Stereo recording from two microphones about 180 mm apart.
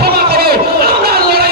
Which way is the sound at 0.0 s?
60° right (ahead or behind).